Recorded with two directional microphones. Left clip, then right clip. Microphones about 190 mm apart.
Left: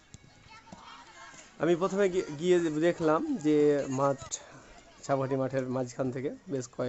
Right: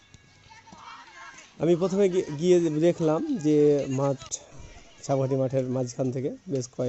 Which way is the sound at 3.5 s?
10° right (ahead or behind).